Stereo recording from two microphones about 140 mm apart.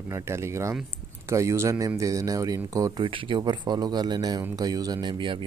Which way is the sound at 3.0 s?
40° right (ahead or behind).